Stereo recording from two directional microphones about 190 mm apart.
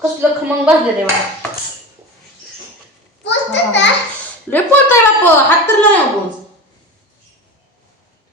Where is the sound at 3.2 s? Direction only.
70° left (ahead or behind).